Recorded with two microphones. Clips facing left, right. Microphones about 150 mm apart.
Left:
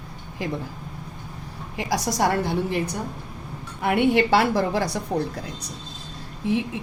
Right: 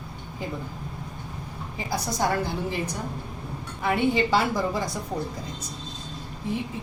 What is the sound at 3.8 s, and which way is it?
A woman's voice, 65° left (ahead or behind).